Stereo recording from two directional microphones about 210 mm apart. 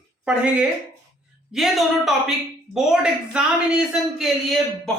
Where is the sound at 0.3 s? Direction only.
5° right (ahead or behind).